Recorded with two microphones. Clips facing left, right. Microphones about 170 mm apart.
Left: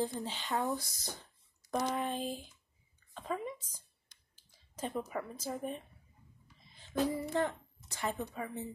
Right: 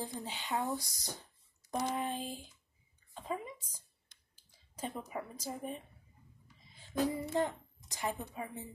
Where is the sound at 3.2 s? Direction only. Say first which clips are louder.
Left 2 dB; 10° right (ahead or behind).